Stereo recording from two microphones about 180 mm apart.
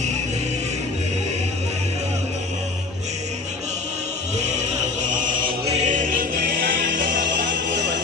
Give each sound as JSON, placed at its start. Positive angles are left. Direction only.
{"t": 4.4, "sound": "choir", "side_deg": -40}
{"t": 7.2, "sound": "music", "side_deg": -75}